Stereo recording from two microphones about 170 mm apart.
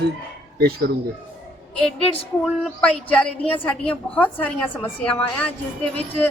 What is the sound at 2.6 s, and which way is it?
A woman's voice, 5° left (ahead or behind).